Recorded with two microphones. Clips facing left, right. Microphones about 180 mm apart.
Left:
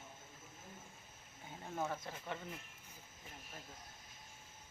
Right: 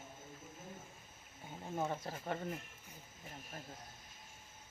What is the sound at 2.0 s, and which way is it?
Speech, 40° right (ahead or behind).